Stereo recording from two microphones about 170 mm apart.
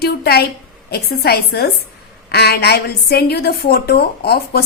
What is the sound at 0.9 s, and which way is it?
A woman's voice, 65° left (ahead or behind).